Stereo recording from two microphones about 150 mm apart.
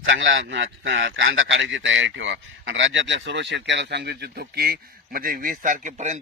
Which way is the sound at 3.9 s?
90° right.